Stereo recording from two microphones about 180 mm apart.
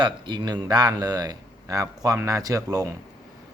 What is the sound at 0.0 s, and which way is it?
A man's voice, 25° right (ahead or behind).